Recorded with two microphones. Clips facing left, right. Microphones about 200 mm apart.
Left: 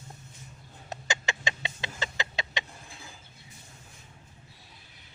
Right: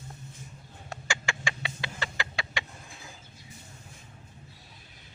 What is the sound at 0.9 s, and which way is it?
Chicken, 20° left (ahead or behind).